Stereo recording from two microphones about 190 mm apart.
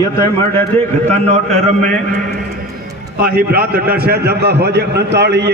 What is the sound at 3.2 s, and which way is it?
A man's voice, 55° right (ahead or behind).